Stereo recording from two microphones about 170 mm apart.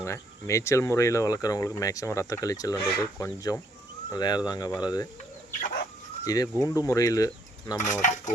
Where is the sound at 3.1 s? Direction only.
20° left (ahead or behind).